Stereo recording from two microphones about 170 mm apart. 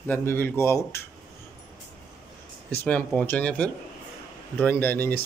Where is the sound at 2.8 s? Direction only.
10° left (ahead or behind).